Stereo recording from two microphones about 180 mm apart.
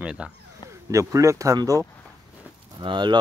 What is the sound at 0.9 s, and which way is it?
Speech, 15° right (ahead or behind).